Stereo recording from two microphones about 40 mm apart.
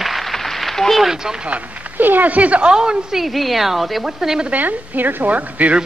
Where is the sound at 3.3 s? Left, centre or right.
Centre.